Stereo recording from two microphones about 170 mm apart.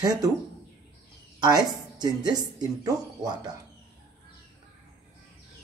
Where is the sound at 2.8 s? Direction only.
20° right (ahead or behind).